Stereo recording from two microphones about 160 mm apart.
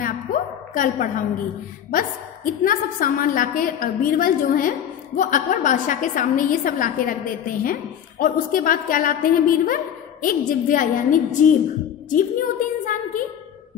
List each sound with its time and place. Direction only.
0.0 s a woman's voice: 55° left (ahead or behind)